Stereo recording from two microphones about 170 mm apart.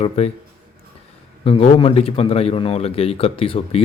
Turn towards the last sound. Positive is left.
turn(degrees=35)  # may be behind; listen again after turning